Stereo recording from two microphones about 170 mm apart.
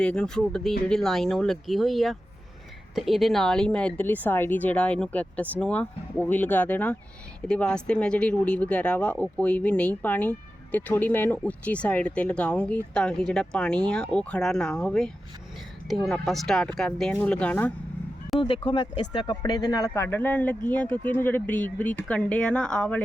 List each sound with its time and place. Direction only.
0.0 s speech: 5° left (ahead or behind)
18.3 s speech: 30° left (ahead or behind); by 23.0 s 5° left (ahead or behind)